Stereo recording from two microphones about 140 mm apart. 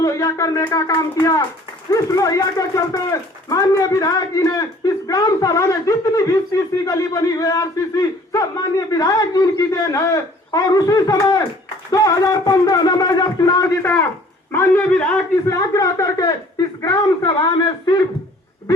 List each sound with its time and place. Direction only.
0.0 s a man's voice: 25° left (ahead or behind)
15.5 s speech: 25° left (ahead or behind)